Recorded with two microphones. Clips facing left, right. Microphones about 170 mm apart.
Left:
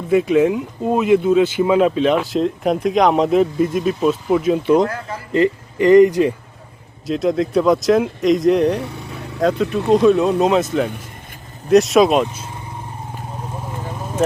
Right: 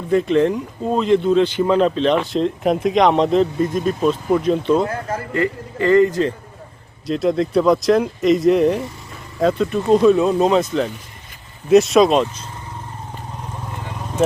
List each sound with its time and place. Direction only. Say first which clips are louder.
0.1 s speech: left 1 dB; 5° left (ahead or behind)
7.1 s speech: even; centre (ahead or behind)
8.8 s vehicle: left 3 dB; 70° left (ahead or behind)
9.4 s speech: even; centre (ahead or behind)